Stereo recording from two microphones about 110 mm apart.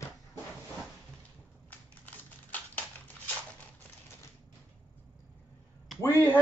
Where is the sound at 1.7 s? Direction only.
15° left (ahead or behind).